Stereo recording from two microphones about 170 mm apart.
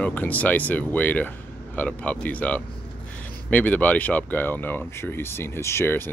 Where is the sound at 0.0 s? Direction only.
10° left (ahead or behind).